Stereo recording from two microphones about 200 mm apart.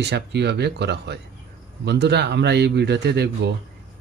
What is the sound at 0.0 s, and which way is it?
A man's voice, 60° right (ahead or behind).